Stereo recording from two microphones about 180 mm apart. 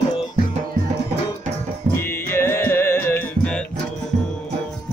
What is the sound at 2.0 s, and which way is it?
Music, 15° left (ahead or behind).